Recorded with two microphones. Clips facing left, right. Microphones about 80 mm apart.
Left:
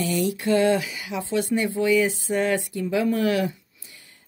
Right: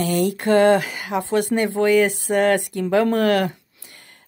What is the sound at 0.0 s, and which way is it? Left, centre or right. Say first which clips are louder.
Speech: right 4 dB; right.